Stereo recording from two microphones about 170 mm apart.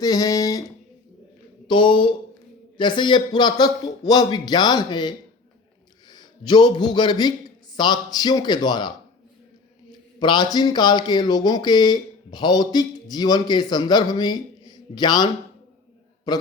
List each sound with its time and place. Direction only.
0.0 s speech: 20° left (ahead or behind)
1.6 s a man's voice: 30° left (ahead or behind)
10.2 s a man's voice: 25° left (ahead or behind)